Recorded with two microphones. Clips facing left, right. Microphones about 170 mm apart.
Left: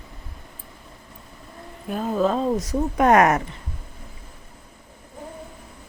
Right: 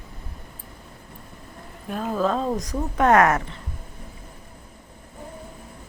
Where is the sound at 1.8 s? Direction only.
5° left (ahead or behind).